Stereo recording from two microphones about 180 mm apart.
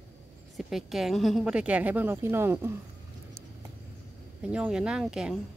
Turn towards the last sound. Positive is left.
turn(degrees=0)  # may be behind; listen again after turning